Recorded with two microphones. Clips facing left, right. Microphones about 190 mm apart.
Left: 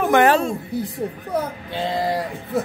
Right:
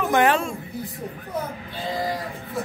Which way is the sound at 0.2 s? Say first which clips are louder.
Left 4 dB; 40° left (ahead or behind).